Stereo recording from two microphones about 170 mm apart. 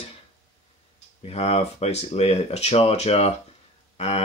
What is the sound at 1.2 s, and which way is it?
Speech, 40° left (ahead or behind).